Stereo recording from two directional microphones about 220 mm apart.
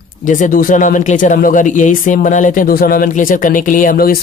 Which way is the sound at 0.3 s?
35° left (ahead or behind).